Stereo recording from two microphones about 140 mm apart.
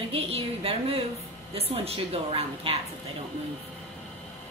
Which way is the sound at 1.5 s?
45° right (ahead or behind).